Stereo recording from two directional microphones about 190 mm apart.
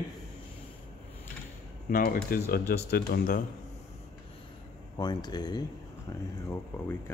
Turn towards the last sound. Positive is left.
turn(degrees=10)  # may be behind; listen again after turning